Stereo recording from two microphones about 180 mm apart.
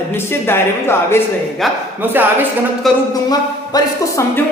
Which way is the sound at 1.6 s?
Centre (ahead or behind).